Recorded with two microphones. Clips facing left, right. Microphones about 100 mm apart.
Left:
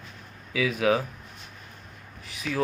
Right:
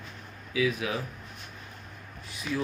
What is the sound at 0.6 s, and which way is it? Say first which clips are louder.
Speech: left 5 dB; 90° left.